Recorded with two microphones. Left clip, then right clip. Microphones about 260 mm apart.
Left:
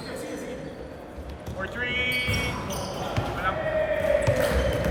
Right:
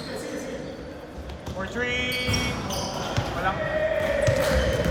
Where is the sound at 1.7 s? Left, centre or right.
Right.